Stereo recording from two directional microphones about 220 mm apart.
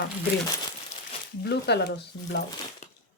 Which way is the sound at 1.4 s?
50° left (ahead or behind).